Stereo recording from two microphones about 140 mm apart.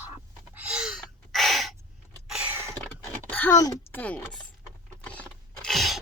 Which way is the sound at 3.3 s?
15° left (ahead or behind).